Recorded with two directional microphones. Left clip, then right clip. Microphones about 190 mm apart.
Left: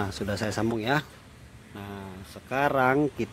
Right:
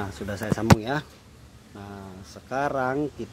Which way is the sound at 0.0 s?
10° left (ahead or behind).